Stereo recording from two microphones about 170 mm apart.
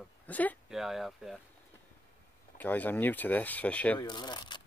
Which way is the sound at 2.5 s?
10° left (ahead or behind).